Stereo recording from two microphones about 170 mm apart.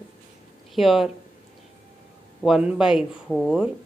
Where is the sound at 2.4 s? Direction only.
5° right (ahead or behind).